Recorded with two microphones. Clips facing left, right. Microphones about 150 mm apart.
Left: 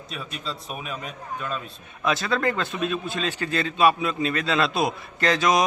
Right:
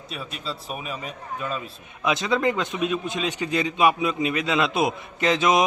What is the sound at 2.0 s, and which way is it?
A man's voice, 20° right (ahead or behind).